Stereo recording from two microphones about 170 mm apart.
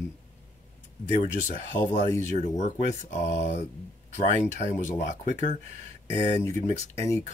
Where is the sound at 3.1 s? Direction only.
45° left (ahead or behind).